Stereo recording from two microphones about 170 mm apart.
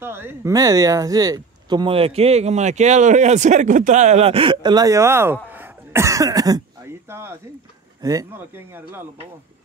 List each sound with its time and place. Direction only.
0.0 s speech: 15° right (ahead or behind)